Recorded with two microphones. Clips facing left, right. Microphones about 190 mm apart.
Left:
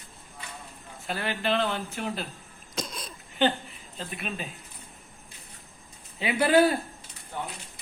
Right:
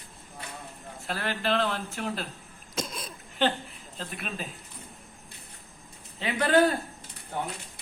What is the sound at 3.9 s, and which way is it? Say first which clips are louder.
Speech: left 1 dB; centre (ahead or behind).